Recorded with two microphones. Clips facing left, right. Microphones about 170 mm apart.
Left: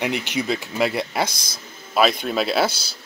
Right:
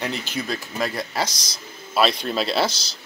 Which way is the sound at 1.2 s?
55° left (ahead or behind).